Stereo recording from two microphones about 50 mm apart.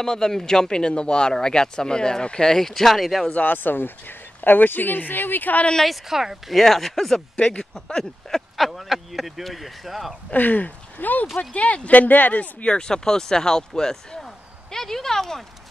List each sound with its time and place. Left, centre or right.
0.0 s speech: centre
3.3 s speech: left
5.9 s speech: centre
7.3 s speech: centre
8.0 s speech: centre
10.3 s speech: left
12.7 s speech: centre